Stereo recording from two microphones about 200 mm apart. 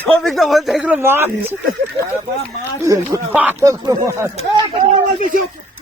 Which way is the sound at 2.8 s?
15° right (ahead or behind).